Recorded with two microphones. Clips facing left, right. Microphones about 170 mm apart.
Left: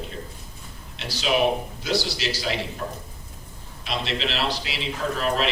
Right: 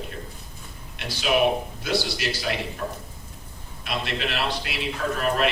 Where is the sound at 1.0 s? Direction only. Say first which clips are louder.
Right 1 dB; 55° right (ahead or behind).